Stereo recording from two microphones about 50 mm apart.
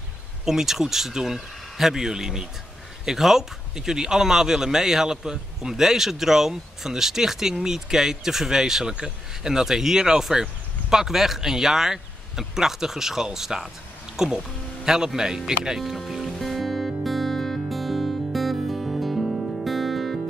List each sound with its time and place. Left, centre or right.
0.5 s a man's voice: centre
15.8 s speech: centre
16.3 s music: centre